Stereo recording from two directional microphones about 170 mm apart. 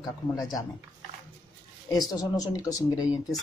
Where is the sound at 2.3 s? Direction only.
20° left (ahead or behind).